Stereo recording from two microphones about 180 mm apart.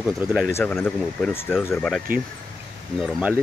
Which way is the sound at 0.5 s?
15° left (ahead or behind).